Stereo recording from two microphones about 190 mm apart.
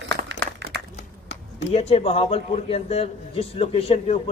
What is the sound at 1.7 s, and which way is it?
A man's voice, 30° left (ahead or behind).